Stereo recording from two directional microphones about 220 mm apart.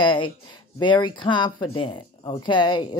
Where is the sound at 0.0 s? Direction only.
20° left (ahead or behind).